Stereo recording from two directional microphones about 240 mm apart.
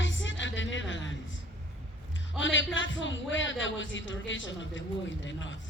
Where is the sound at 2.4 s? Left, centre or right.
Left.